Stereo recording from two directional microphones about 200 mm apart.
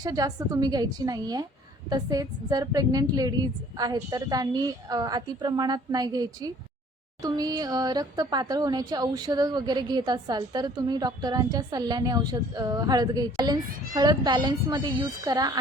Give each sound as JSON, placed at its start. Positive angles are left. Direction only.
{"t": 0.0, "sound": "speech", "side_deg": -20}